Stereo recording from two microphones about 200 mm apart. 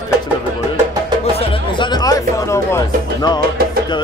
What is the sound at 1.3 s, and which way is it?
Music, 25° left (ahead or behind).